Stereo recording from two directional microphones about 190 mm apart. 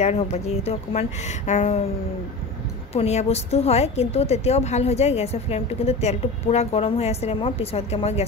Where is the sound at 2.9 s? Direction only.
35° left (ahead or behind).